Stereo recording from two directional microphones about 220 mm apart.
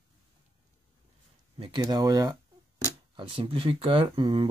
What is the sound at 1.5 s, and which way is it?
Speech, 20° right (ahead or behind).